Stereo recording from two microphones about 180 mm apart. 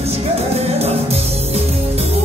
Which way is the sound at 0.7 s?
35° right (ahead or behind).